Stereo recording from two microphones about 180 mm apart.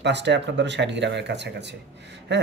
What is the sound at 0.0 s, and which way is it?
Speech, 75° right (ahead or behind).